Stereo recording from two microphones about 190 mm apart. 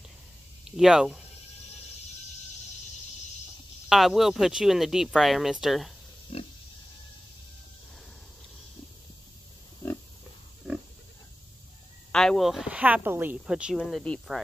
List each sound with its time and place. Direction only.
0.7 s speech: 5° right (ahead or behind)
3.9 s speech: centre (ahead or behind)
6.3 s pig: 30° left (ahead or behind)
10.6 s pig: 5° right (ahead or behind)
12.1 s speech: 5° left (ahead or behind)